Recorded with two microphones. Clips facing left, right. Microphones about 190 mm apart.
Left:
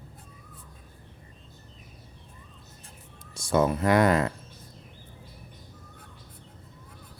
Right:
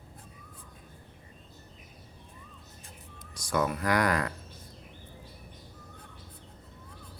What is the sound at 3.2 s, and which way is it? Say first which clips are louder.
Speech: left 6 dB; 25° left (ahead or behind).